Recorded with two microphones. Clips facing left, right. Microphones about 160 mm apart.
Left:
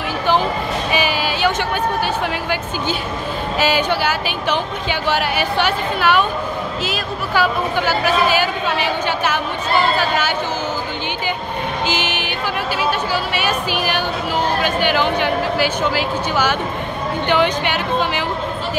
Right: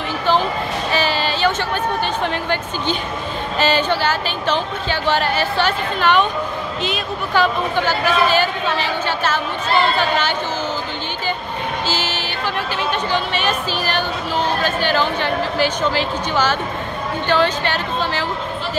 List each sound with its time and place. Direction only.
0.9 s a sound: 10° left (ahead or behind)
2.2 s a woman's voice: 10° left (ahead or behind)
11.8 s music: 15° left (ahead or behind)
13.1 s a woman's voice: 10° left (ahead or behind)